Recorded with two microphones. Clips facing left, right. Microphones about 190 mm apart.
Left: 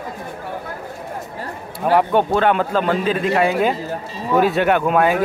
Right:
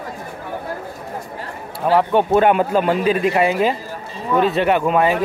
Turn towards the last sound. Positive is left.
turn(degrees=0)  # may be behind; listen again after turning